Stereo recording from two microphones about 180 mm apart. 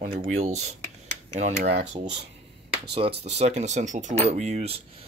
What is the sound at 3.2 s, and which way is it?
Speech, 35° right (ahead or behind).